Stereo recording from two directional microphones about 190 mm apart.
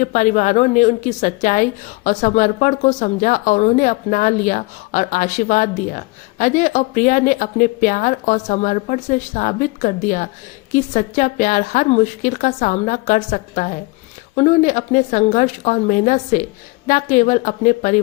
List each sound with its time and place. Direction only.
0.0 s speech: 40° left (ahead or behind)